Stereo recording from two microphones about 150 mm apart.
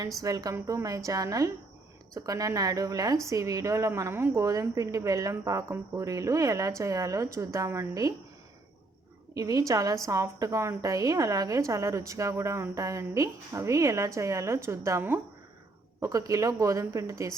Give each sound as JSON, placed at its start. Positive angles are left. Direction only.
{"t": 0.2, "sound": "a woman's voice", "side_deg": -25}
{"t": 9.3, "sound": "a woman's voice", "side_deg": -25}